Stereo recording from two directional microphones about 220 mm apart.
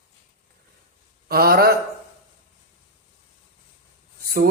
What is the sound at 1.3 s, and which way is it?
Speech, 45° right (ahead or behind).